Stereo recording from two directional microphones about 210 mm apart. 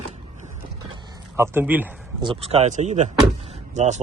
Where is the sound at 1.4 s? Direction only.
10° right (ahead or behind).